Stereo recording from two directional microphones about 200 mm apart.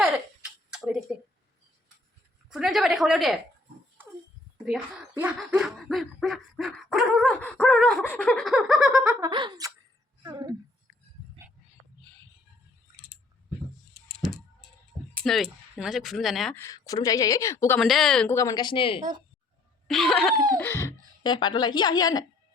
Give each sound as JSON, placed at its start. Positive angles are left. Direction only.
{"t": 0.7, "sound": "a sound", "side_deg": -5}
{"t": 2.5, "sound": "speech", "side_deg": 0}
{"t": 4.6, "sound": "speech", "side_deg": -5}
{"t": 9.2, "sound": "speech", "side_deg": -20}
{"t": 10.2, "sound": "a sound", "side_deg": -20}
{"t": 15.1, "sound": "speech", "side_deg": 0}
{"t": 16.6, "sound": "speech", "side_deg": 15}
{"t": 17.7, "sound": "speech", "side_deg": 0}
{"t": 18.3, "sound": "a woman's voice", "side_deg": 20}
{"t": 19.9, "sound": "speech", "side_deg": 0}
{"t": 20.6, "sound": "a woman's voice", "side_deg": 15}